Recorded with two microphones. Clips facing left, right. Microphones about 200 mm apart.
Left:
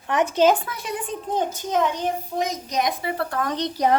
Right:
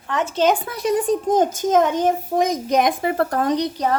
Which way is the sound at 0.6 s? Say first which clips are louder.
Right 11 dB; 40° right (ahead or behind).